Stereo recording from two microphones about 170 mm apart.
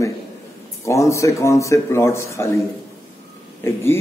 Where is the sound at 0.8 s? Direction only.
20° left (ahead or behind).